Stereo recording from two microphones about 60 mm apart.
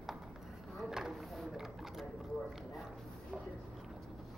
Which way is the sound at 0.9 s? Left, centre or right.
Centre.